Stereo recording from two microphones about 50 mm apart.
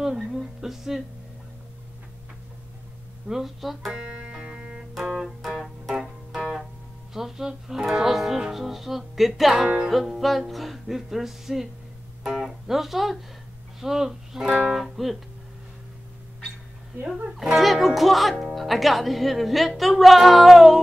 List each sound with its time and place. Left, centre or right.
0.0 s a sound: centre
3.3 s a woman's voice: centre
4.0 s music: centre
10.2 s a woman's voice: centre
17.6 s a woman's voice: centre